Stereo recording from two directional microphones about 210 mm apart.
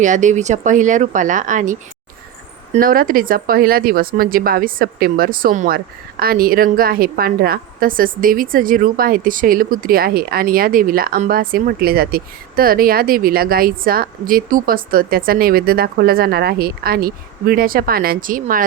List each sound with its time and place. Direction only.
0.0 s speech: 35° right (ahead or behind)